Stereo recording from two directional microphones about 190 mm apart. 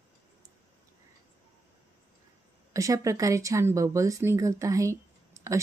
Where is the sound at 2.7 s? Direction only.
15° right (ahead or behind).